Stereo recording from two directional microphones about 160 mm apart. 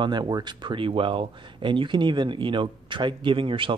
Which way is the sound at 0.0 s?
25° right (ahead or behind).